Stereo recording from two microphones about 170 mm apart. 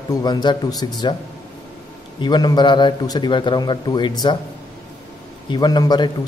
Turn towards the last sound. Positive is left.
turn(degrees=25)  # may be behind; listen again after turning